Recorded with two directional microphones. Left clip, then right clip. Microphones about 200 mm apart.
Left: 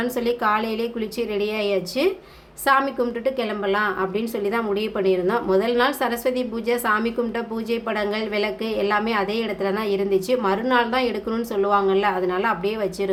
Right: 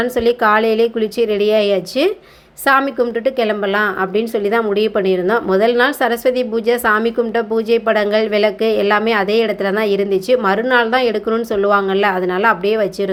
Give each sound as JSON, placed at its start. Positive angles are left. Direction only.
{"t": 0.0, "sound": "a woman's voice", "side_deg": -25}